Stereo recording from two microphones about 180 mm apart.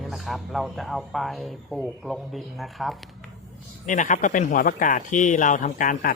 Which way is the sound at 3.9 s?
45° left (ahead or behind).